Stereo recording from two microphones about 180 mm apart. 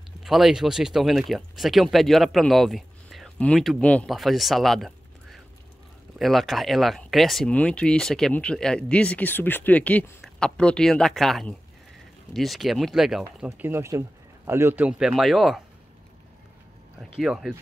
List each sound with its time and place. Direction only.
0.2 s speech: centre (ahead or behind)
17.0 s speech: centre (ahead or behind)